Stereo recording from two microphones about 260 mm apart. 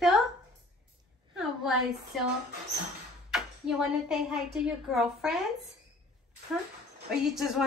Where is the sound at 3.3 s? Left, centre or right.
Centre.